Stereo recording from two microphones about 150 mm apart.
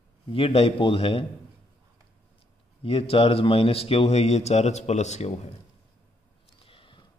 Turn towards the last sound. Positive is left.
turn(degrees=35)  # may be behind; listen again after turning